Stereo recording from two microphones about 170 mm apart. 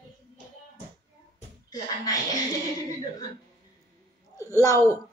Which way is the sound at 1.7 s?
20° left (ahead or behind).